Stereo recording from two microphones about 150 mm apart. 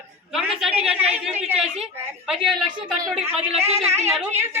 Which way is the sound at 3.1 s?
45° right (ahead or behind).